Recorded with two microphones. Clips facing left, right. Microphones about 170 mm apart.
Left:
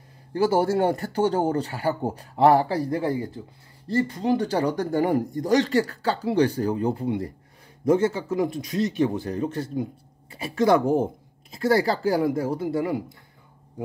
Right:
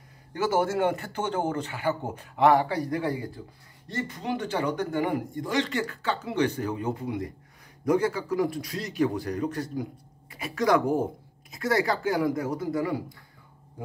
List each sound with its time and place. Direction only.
0.3 s speech: 30° left (ahead or behind)